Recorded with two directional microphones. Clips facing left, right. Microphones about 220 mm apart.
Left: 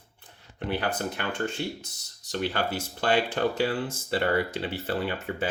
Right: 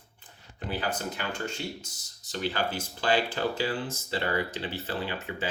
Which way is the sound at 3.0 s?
60° left (ahead or behind).